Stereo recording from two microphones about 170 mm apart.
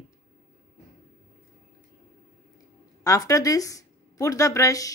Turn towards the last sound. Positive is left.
turn(degrees=20)  # may be behind; listen again after turning